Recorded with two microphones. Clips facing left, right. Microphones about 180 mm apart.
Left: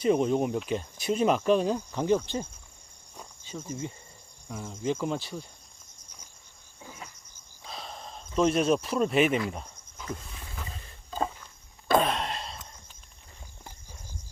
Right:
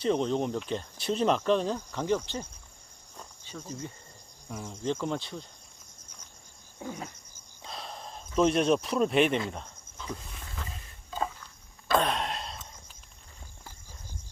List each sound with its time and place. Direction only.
0.0 s speech: 10° left (ahead or behind)
3.2 s insect: 5° left (ahead or behind)
3.7 s speech: 20° left (ahead or behind)
4.4 s speech: 5° left (ahead or behind)
7.6 s a sound: centre (ahead or behind)
10.2 s wild animals: centre (ahead or behind)
11.9 s sigh: centre (ahead or behind)